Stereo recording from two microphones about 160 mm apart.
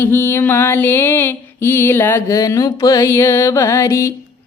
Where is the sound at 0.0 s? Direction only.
15° left (ahead or behind).